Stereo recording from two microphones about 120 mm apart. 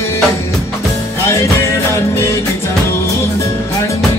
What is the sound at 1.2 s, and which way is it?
Music, 25° left (ahead or behind).